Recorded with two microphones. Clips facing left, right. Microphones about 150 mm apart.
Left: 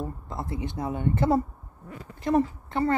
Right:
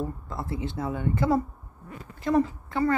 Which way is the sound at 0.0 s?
20° left (ahead or behind).